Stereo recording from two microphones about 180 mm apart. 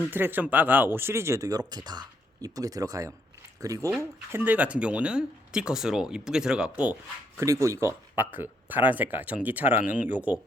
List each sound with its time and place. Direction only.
0.1 s speech: 10° right (ahead or behind)
7.3 s speech: 15° right (ahead or behind)